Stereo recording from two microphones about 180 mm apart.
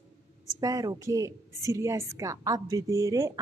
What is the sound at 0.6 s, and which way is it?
A woman's voice, 20° right (ahead or behind).